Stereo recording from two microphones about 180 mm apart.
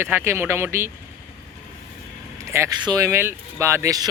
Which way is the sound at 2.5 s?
20° right (ahead or behind).